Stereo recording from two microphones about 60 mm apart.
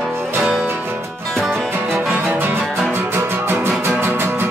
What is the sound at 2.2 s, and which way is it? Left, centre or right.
Music, right.